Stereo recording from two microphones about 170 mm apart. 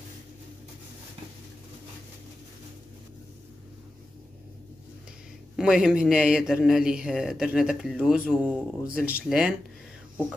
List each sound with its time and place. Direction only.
5.6 s speech: 5° right (ahead or behind)